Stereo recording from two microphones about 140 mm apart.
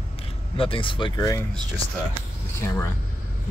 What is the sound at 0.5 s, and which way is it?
Speech, 40° left (ahead or behind).